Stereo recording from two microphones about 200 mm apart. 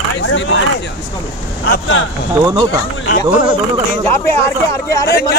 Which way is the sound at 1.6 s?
65° left (ahead or behind).